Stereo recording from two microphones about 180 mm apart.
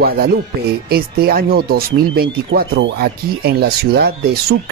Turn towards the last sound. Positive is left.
turn(degrees=-60)  # may be behind; listen again after turning